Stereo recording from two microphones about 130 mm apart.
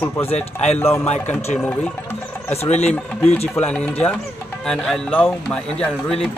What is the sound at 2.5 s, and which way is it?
Speech, 55° left (ahead or behind).